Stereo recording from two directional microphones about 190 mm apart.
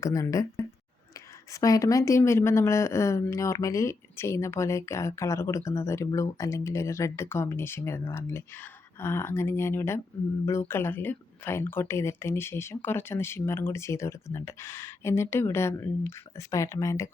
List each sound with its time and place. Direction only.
0.0 s speech: 15° left (ahead or behind)
1.6 s speech: 20° left (ahead or behind)